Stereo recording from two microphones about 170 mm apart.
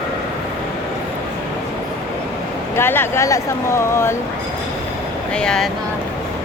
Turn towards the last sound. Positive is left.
turn(degrees=5)  # may be behind; listen again after turning